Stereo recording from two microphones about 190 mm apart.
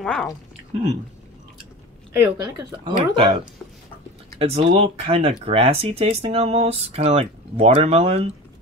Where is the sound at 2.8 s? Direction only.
25° right (ahead or behind).